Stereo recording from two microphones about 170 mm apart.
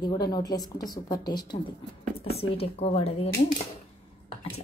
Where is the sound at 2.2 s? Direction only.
35° left (ahead or behind).